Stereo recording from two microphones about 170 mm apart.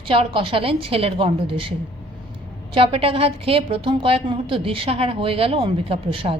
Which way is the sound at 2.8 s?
35° right (ahead or behind).